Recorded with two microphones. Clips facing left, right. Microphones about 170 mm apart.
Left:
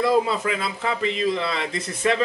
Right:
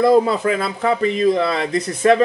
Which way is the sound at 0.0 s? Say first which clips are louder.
Right 6 dB; 40° right (ahead or behind).